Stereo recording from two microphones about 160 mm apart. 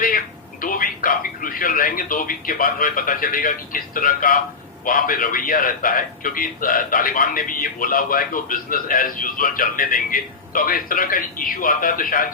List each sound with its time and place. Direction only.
0.6 s a man's voice: 60° left (ahead or behind)